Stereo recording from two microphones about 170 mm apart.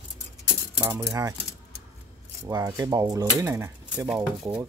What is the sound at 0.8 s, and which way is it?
Speech, 15° right (ahead or behind).